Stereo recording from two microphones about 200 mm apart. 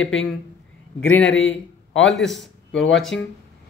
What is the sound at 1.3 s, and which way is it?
Speech, 70° left (ahead or behind).